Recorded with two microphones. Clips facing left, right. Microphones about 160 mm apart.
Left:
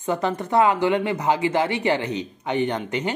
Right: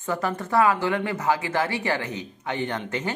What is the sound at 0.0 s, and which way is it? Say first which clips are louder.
Speech: left 3 dB; 20° left (ahead or behind).